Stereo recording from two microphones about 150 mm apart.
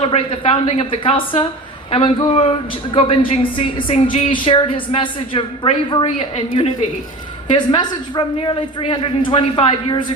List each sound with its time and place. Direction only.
0.0 s speech: 40° left (ahead or behind)
7.5 s speech: 30° left (ahead or behind)